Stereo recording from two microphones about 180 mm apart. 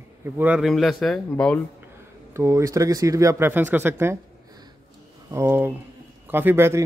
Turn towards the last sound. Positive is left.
turn(degrees=-15)  # may be behind; listen again after turning